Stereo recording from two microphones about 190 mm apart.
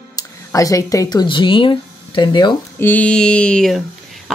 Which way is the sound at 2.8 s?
10° left (ahead or behind).